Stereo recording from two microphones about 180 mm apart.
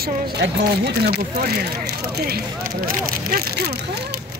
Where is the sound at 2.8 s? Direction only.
55° right (ahead or behind).